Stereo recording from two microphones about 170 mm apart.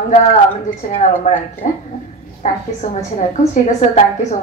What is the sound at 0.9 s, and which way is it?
A woman's voice, 40° left (ahead or behind).